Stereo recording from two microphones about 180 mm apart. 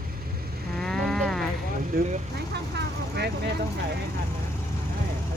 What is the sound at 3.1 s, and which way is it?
Speech, 65° right (ahead or behind).